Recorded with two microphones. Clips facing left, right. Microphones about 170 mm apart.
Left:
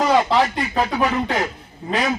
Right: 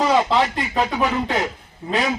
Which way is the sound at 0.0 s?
Centre (ahead or behind).